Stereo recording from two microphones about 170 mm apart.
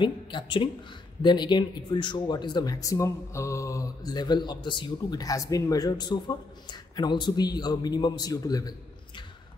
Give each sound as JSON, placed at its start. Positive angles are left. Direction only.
{"t": 0.0, "sound": "speech", "side_deg": 30}